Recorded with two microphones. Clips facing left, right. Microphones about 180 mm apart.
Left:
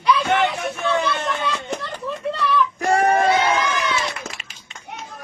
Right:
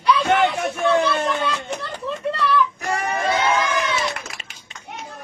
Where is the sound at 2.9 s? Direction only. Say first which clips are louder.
Left 7 dB; 45° left (ahead or behind).